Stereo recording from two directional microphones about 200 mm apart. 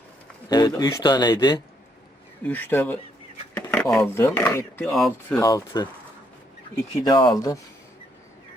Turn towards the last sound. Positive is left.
turn(degrees=20)  # may be behind; listen again after turning